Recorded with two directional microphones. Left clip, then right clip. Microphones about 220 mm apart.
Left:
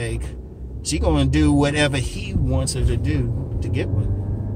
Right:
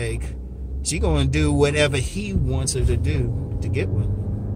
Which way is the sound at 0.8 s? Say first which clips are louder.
Left 3 dB; 10° right (ahead or behind).